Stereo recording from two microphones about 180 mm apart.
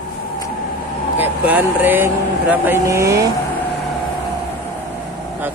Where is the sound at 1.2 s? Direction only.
10° right (ahead or behind).